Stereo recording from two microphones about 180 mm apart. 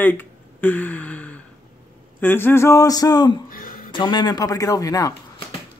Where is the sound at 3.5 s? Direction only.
50° left (ahead or behind).